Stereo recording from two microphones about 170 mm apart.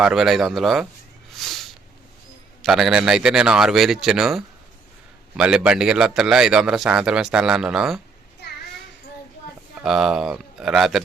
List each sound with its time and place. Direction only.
0.0 s a man's voice: centre (ahead or behind)
1.3 s a sound: centre (ahead or behind)
2.6 s a man's voice: centre (ahead or behind)
8.4 s child singing: 75° left (ahead or behind)
9.8 s a man's voice: 5° right (ahead or behind)